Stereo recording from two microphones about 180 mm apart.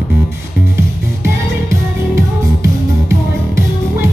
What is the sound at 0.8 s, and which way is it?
Music, 15° right (ahead or behind).